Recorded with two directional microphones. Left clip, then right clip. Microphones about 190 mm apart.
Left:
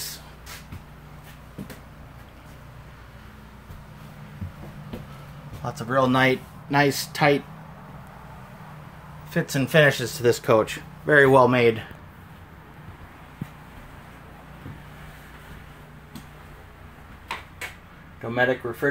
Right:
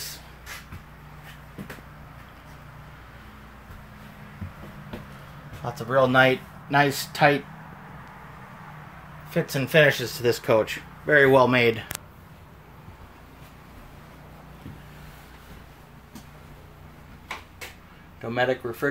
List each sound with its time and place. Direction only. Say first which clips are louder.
5.6 s speech: right 1 dB; 15° right (ahead or behind)
9.3 s speech: even; 10° right (ahead or behind)
18.2 s speech: left 2 dB; centre (ahead or behind)